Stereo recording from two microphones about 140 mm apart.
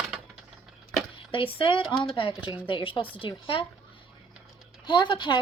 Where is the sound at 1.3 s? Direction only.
40° left (ahead or behind).